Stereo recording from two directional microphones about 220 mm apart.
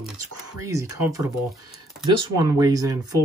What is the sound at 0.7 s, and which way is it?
Speech, 15° right (ahead or behind).